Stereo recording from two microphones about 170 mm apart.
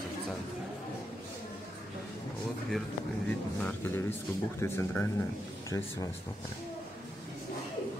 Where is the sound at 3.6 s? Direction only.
10° left (ahead or behind).